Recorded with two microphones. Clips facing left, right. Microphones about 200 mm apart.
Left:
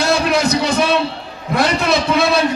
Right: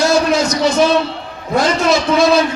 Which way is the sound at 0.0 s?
60° left (ahead or behind).